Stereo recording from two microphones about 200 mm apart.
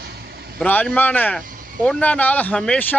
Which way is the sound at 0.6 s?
10° left (ahead or behind).